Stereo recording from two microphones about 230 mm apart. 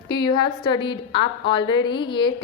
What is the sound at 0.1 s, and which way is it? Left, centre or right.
A woman's voice, centre.